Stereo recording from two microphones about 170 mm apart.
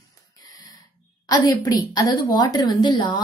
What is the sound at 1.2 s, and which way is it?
A woman's voice, 20° left (ahead or behind).